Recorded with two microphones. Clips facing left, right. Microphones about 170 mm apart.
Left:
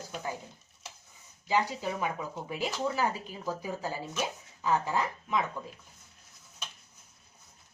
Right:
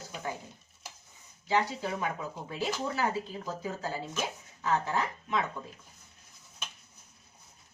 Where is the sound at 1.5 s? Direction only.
15° left (ahead or behind).